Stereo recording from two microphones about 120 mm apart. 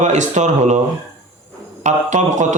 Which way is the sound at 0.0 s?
85° right.